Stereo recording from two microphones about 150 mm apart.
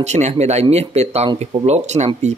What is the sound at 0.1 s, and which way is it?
Speech, 50° right (ahead or behind).